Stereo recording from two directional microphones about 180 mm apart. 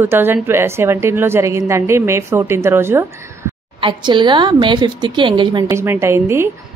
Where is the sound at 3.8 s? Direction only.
25° right (ahead or behind).